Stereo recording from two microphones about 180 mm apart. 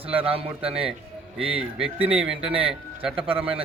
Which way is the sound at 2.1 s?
30° right (ahead or behind).